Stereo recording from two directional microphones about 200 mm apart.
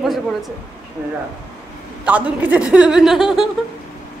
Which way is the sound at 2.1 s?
5° right (ahead or behind).